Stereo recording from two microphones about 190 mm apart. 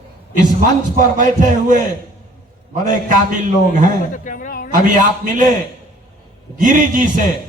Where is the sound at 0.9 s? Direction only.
45° right (ahead or behind).